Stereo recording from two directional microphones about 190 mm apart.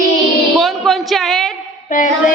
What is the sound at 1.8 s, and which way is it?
Child singing, 40° left (ahead or behind).